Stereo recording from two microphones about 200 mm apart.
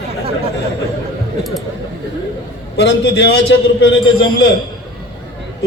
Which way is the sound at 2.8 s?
60° left (ahead or behind).